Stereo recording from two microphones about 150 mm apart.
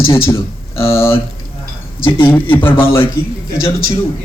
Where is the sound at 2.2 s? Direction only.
15° left (ahead or behind).